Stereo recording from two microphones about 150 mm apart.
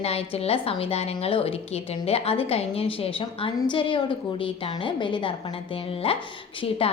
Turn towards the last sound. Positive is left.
turn(degrees=40)  # may be behind; listen again after turning